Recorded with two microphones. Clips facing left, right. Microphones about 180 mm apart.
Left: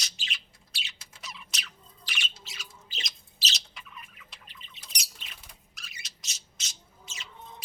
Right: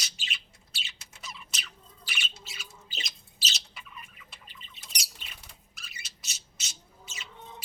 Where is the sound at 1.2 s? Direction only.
Centre (ahead or behind).